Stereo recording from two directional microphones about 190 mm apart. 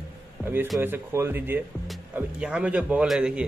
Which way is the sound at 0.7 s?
10° right (ahead or behind).